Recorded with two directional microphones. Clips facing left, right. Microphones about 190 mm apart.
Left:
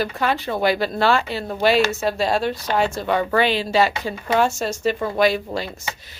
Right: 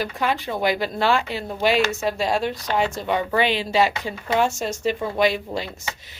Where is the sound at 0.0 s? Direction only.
15° right (ahead or behind).